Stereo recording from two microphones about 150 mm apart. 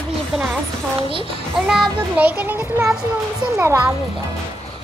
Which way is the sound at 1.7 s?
5° right (ahead or behind).